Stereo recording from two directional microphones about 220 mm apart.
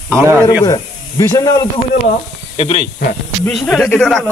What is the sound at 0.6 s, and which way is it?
Speech, 15° left (ahead or behind).